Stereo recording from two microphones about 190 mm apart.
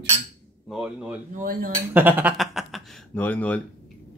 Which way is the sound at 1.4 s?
50° right (ahead or behind).